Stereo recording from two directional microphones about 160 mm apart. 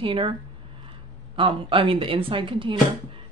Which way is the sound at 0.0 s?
30° right (ahead or behind).